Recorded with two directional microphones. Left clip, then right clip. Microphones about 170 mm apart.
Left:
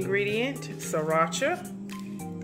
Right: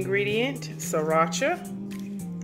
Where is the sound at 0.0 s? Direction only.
10° right (ahead or behind).